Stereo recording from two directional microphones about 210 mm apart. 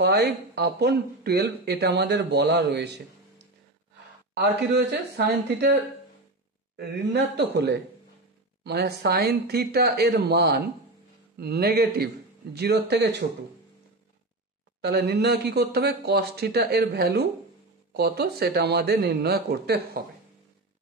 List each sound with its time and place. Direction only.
0.0 s speech: 50° right (ahead or behind)
4.4 s speech: 55° right (ahead or behind)
6.8 s speech: 55° right (ahead or behind)
14.8 s speech: 50° right (ahead or behind)